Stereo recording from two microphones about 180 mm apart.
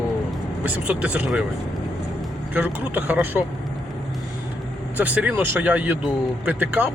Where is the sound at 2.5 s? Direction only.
10° right (ahead or behind).